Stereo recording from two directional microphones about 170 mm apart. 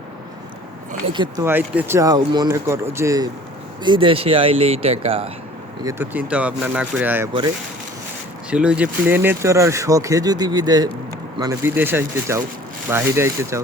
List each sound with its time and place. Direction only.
1.1 s speech: 25° right (ahead or behind)
1.5 s speech: 10° right (ahead or behind)
3.8 s speech: 30° right (ahead or behind)
5.8 s speech: 15° right (ahead or behind)
8.4 s speech: 5° right (ahead or behind)